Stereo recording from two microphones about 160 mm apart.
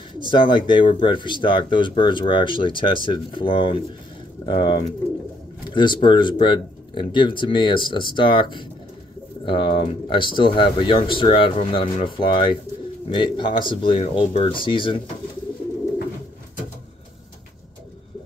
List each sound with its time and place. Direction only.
0.3 s speech: 30° left (ahead or behind)